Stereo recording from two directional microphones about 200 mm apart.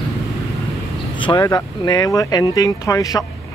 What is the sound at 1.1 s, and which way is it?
Speech, 20° left (ahead or behind).